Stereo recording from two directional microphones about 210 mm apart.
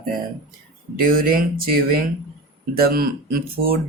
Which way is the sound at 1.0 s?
45° right (ahead or behind).